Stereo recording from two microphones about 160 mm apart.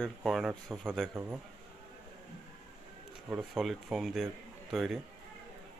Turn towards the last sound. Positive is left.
turn(degrees=0)  # may be behind; listen again after turning